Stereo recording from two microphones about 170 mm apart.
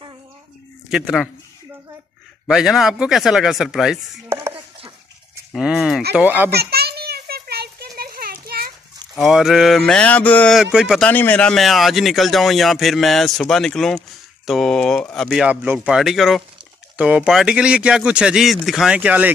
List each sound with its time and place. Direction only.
0.8 s speech: centre (ahead or behind)
2.4 s speech: centre (ahead or behind)
5.5 s a child's voice: centre (ahead or behind)
6.5 s a sound: 70° right (ahead or behind)
9.1 s speech: centre (ahead or behind)
10.6 s speech: 5° right (ahead or behind)
11.1 s speech: 10° left (ahead or behind)
15.3 s speech: 5° right (ahead or behind)